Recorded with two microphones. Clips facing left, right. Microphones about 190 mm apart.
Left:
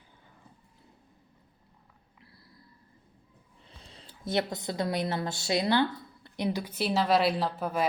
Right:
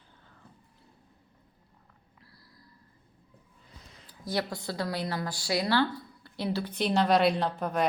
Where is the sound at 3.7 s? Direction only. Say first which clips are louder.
Left 2 dB; 30° left (ahead or behind).